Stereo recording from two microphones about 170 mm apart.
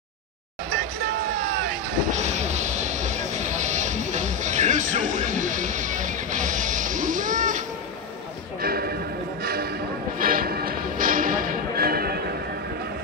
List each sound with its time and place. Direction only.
1.5 s vehicle: 55° right (ahead or behind)
8.6 s clip-clop: 65° right (ahead or behind)
9.4 s music: 65° right (ahead or behind)